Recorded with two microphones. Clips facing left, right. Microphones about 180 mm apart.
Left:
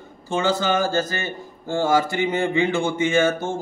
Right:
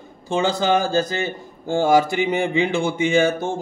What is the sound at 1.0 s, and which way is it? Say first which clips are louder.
A man's voice: right 3 dB; 15° right (ahead or behind).